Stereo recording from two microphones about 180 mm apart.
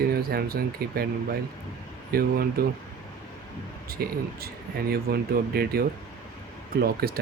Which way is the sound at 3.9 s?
55° right (ahead or behind).